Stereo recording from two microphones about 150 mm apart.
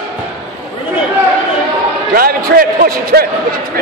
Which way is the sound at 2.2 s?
80° right.